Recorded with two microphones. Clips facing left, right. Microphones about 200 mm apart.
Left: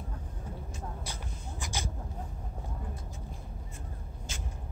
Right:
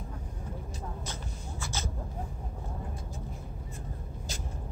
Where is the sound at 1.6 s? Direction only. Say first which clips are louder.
Even; 15° left (ahead or behind).